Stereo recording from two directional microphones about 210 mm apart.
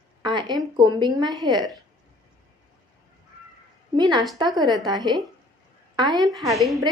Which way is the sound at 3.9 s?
20° right (ahead or behind).